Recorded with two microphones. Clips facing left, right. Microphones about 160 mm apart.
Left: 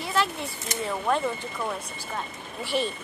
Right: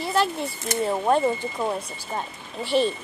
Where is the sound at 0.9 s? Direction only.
35° right (ahead or behind).